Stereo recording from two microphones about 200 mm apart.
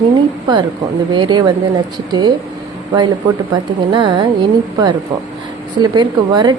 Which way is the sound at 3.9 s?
25° right (ahead or behind).